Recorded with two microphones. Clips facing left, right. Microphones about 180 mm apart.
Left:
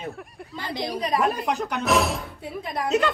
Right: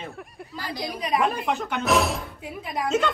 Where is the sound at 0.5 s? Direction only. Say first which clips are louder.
Left 2 dB; 25° left (ahead or behind).